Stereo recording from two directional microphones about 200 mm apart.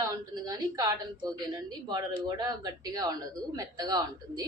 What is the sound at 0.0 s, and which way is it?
A woman's voice, 20° right (ahead or behind).